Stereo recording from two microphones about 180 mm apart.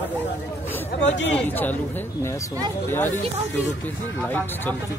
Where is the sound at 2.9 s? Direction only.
10° left (ahead or behind).